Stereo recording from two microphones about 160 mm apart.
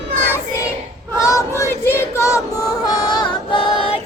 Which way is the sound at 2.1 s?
20° left (ahead or behind).